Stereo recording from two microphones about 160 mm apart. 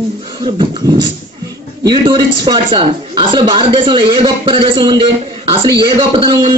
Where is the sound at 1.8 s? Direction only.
25° right (ahead or behind).